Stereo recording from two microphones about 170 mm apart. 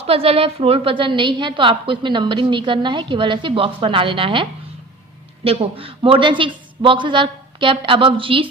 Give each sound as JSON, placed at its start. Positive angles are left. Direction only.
{"t": 0.0, "sound": "a woman's voice", "side_deg": -35}